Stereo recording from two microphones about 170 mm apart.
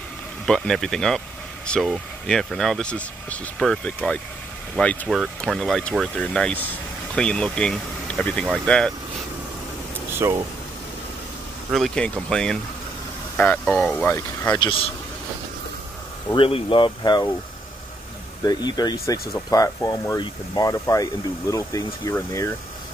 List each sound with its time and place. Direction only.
0.5 s speech: 5° left (ahead or behind)
10.1 s speech: 15° right (ahead or behind)
11.7 s speech: centre (ahead or behind)
14.6 s speech: 30° left (ahead or behind)
16.3 s speech: 35° left (ahead or behind)
18.4 s speech: 25° left (ahead or behind)